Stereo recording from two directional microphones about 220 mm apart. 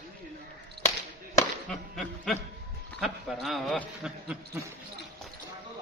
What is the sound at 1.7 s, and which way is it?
Whip, centre (ahead or behind).